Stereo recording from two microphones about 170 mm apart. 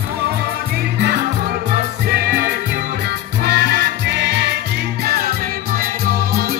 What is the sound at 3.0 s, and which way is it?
Music, 70° right (ahead or behind).